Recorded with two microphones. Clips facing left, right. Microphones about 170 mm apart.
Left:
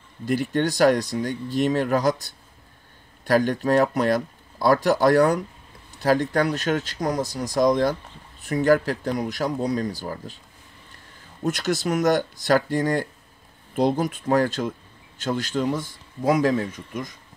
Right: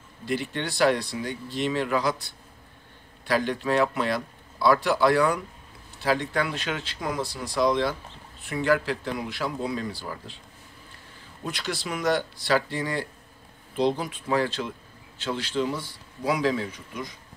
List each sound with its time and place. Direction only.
0.2 s speech: 45° left (ahead or behind)
11.4 s speech: 45° left (ahead or behind)